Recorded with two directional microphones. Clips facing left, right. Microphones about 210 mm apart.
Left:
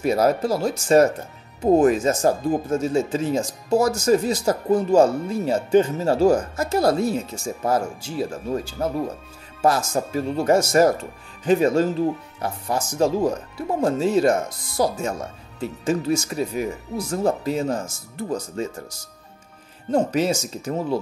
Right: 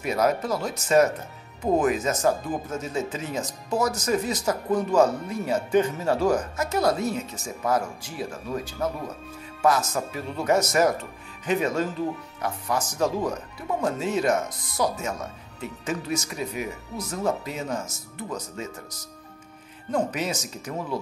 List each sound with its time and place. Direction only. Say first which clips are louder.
0.0 s speech: left 5 dB; 30° left (ahead or behind)